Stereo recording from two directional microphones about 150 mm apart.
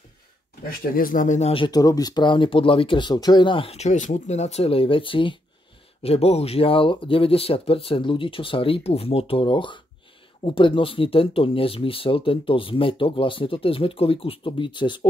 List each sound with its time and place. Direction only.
0.7 s speech: 70° left (ahead or behind)
1.5 s speech: 35° left (ahead or behind)
1.8 s speech: 25° left (ahead or behind)